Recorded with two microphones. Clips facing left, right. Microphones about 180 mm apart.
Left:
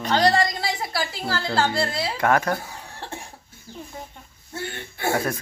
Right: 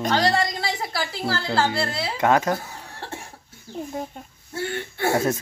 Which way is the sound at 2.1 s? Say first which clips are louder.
Right 2 dB; 20° right (ahead or behind).